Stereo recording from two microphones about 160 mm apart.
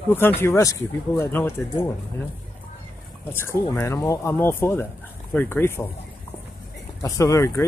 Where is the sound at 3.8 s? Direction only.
20° left (ahead or behind).